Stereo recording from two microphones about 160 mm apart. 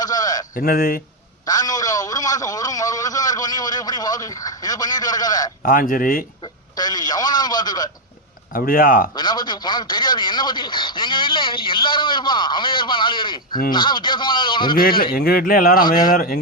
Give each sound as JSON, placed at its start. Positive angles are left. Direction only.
{"t": 0.0, "sound": "bleat", "side_deg": 25}
{"t": 0.5, "sound": "speech", "side_deg": 70}
{"t": 1.5, "sound": "a man's voice", "side_deg": 20}
{"t": 5.6, "sound": "speech", "side_deg": 60}
{"t": 6.4, "sound": "a man's voice", "side_deg": 25}
{"t": 8.5, "sound": "speech", "side_deg": 65}
{"t": 9.1, "sound": "a man's voice", "side_deg": 25}
{"t": 14.8, "sound": "speech", "side_deg": 65}